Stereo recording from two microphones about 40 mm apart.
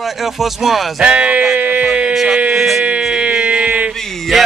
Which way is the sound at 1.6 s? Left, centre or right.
Right.